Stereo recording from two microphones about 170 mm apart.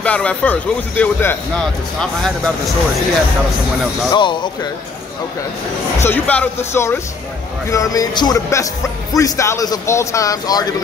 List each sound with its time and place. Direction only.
0.0 s speech: 5° left (ahead or behind)
4.1 s speech: 25° left (ahead or behind)
6.0 s speech: 10° left (ahead or behind)